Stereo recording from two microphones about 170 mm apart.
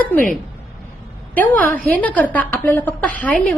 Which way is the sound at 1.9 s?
10° left (ahead or behind).